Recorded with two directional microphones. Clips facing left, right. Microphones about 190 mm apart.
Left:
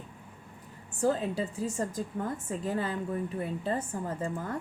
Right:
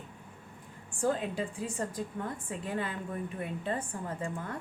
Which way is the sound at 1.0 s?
40° left (ahead or behind).